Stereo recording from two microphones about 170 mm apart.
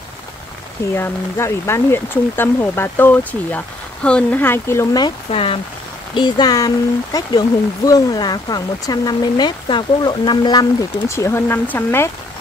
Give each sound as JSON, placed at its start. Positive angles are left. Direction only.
{"t": 0.9, "sound": "speech", "side_deg": 15}